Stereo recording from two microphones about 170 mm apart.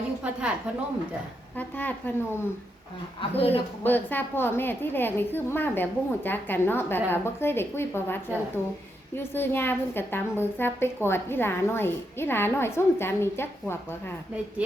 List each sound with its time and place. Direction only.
1.5 s a woman's voice: 10° left (ahead or behind)
3.2 s a woman's voice: 35° left (ahead or behind)
3.8 s a woman's voice: 10° left (ahead or behind)